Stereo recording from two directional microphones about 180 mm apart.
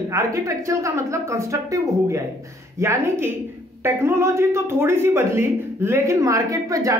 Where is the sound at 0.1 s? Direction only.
15° right (ahead or behind).